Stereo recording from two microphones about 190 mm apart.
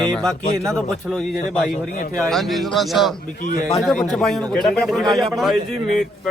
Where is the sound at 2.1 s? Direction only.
Centre (ahead or behind).